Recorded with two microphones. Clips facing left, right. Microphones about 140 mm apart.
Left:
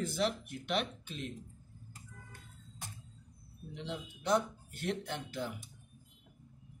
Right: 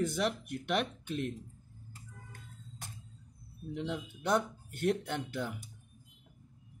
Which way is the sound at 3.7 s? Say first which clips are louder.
Right 5 dB; 55° right (ahead or behind).